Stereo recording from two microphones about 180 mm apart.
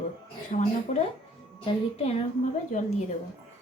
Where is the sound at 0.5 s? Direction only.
50° left (ahead or behind).